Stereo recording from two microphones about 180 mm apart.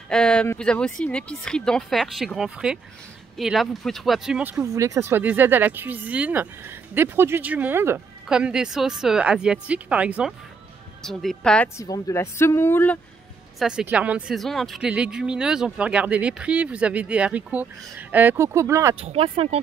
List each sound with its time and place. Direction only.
0.1 s a woman's voice: 5° left (ahead or behind)
13.6 s speech: 5° right (ahead or behind)
18.9 s speech: 30° right (ahead or behind)